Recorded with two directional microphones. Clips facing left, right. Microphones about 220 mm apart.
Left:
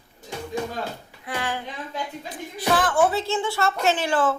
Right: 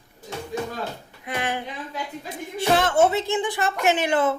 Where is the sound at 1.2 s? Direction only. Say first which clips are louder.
Right 1 dB; 20° right (ahead or behind).